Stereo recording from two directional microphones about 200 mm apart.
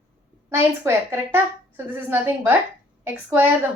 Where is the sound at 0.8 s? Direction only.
10° right (ahead or behind).